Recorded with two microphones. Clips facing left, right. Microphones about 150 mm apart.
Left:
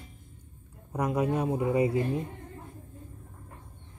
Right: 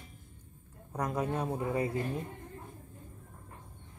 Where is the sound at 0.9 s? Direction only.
10° left (ahead or behind).